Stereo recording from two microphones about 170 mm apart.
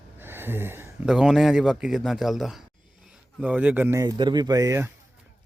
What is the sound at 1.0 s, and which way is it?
A man's voice, 5° right (ahead or behind).